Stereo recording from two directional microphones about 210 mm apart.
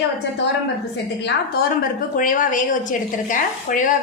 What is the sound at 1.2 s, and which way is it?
A woman's voice, 45° left (ahead or behind).